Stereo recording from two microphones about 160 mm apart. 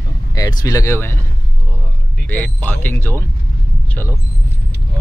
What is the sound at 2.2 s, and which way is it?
Speech, 10° left (ahead or behind).